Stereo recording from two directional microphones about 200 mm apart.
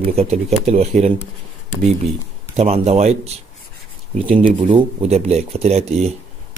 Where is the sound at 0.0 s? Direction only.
30° right (ahead or behind).